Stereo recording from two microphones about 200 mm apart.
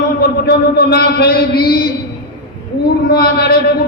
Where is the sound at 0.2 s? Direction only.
55° left (ahead or behind).